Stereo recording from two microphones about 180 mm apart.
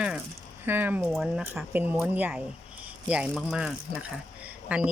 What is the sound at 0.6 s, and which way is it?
Speech, 10° right (ahead or behind).